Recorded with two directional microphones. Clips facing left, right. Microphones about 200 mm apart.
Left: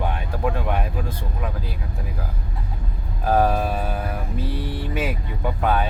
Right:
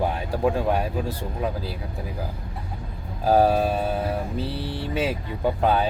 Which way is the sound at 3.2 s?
30° right (ahead or behind).